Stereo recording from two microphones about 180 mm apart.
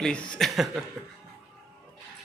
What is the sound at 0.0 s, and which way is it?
Speech, 5° left (ahead or behind).